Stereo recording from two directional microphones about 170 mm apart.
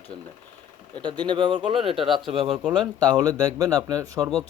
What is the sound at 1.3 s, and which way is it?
Speech, 25° right (ahead or behind).